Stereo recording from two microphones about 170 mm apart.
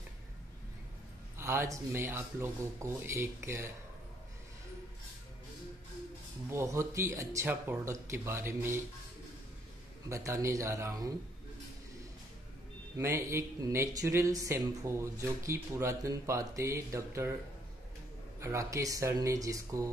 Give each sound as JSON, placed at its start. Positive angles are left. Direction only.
{"t": 1.4, "sound": "speech", "side_deg": -15}
{"t": 6.5, "sound": "speech", "side_deg": -15}
{"t": 10.0, "sound": "speech", "side_deg": -15}
{"t": 12.9, "sound": "speech", "side_deg": -15}
{"t": 18.4, "sound": "speech", "side_deg": -15}